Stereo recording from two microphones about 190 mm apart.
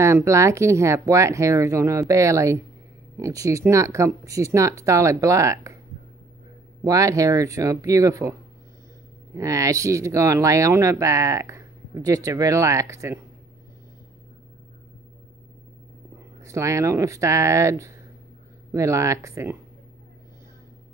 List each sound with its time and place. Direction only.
0.0 s speech: 15° right (ahead or behind)
6.8 s speech: 15° right (ahead or behind)
16.4 s speech: 15° right (ahead or behind)